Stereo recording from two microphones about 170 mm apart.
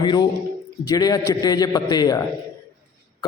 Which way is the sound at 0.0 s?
25° left (ahead or behind).